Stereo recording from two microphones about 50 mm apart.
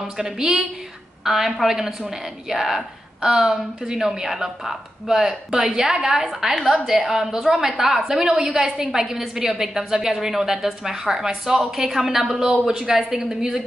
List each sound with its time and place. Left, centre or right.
0.0 s a woman's voice: centre